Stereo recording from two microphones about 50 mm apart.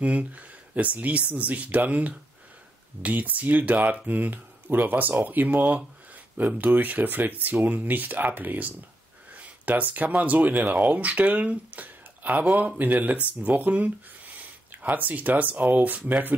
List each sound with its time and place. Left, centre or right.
0.0 s speech: right